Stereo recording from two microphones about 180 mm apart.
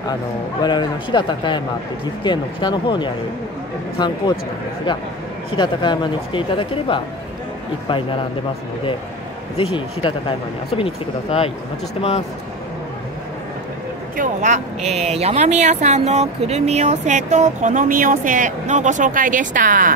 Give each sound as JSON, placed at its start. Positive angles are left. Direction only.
{"t": 0.6, "sound": "speech", "side_deg": 25}
{"t": 5.6, "sound": "speech", "side_deg": 25}
{"t": 9.6, "sound": "speech", "side_deg": 30}
{"t": 14.1, "sound": "speech", "side_deg": -45}